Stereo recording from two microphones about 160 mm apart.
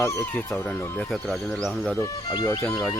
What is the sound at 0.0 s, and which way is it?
Speech, 20° left (ahead or behind).